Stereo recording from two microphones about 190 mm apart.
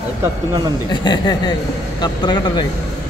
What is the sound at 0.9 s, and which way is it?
Speech, 20° left (ahead or behind).